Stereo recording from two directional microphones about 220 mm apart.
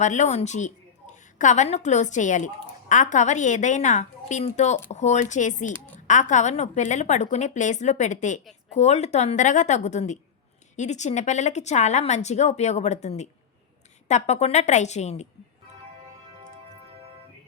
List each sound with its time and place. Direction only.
0.0 s a woman's voice: 35° left (ahead or behind)